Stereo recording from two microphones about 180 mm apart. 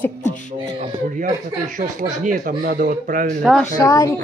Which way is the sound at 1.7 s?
45° right (ahead or behind).